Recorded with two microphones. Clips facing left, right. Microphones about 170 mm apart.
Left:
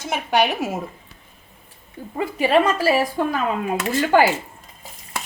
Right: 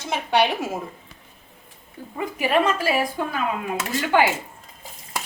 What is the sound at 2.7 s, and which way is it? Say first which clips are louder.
Speech: left 4 dB; 35° left (ahead or behind).